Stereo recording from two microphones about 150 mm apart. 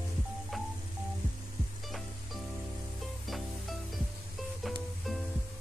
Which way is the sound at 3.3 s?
Centre (ahead or behind).